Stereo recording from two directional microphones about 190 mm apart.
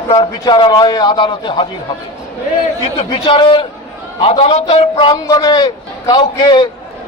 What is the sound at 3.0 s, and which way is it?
A man's voice, 30° left (ahead or behind).